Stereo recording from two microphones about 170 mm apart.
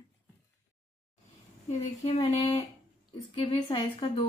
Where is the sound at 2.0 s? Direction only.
30° left (ahead or behind).